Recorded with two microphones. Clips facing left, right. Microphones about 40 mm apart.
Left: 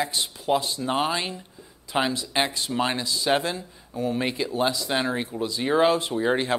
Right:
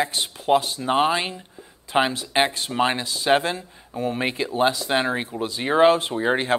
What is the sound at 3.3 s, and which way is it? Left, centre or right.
Speech, right.